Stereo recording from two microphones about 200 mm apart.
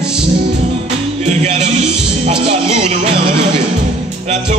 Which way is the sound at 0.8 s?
30° right (ahead or behind).